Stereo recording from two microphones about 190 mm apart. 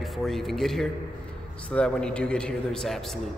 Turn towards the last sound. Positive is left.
turn(degrees=0)  # may be behind; listen again after turning